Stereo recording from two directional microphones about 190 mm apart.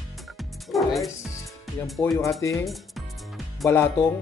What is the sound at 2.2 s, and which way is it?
Speech, 15° left (ahead or behind).